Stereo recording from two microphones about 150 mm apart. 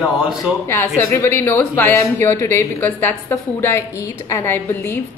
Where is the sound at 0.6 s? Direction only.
20° left (ahead or behind).